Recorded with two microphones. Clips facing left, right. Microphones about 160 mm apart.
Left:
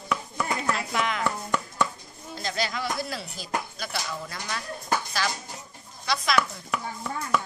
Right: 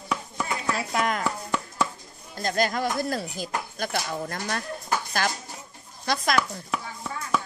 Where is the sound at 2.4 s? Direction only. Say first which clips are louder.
Right 5 dB; 50° right (ahead or behind).